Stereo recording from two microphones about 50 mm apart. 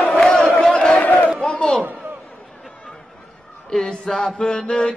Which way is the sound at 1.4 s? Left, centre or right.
Centre.